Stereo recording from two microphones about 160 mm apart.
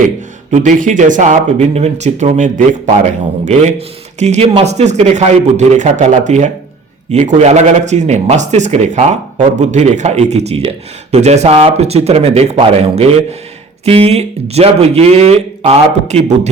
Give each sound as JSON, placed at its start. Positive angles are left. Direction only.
{"t": 0.5, "sound": "speech", "side_deg": -50}